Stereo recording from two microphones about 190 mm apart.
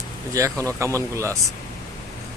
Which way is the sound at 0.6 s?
15° right (ahead or behind).